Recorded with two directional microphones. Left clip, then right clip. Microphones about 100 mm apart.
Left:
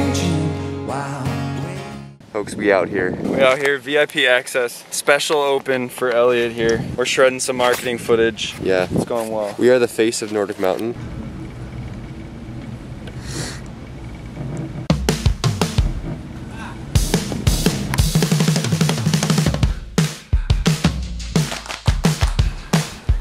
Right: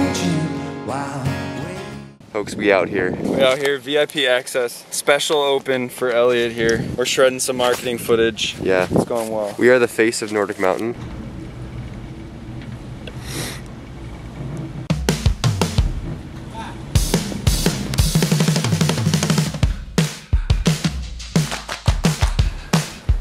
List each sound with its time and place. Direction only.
0.0 s music: centre (ahead or behind)
2.3 s speech: 5° left (ahead or behind)
3.2 s speech: 15° right (ahead or behind)
8.6 s speech: 20° left (ahead or behind)
8.9 s speech: 15° right (ahead or behind)
9.4 s speech: 20° left (ahead or behind)
14.9 s music: centre (ahead or behind)
16.9 s drum kit: centre (ahead or behind)